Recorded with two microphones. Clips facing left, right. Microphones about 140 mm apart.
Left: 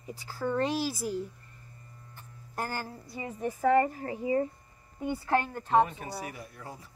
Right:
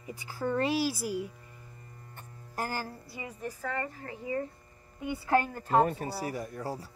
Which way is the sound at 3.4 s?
20° left (ahead or behind).